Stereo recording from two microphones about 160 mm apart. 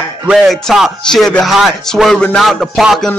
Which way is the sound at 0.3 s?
Centre (ahead or behind).